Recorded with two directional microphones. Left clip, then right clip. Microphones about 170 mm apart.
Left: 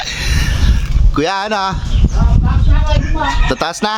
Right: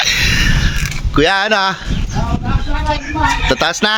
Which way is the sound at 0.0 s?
Centre (ahead or behind).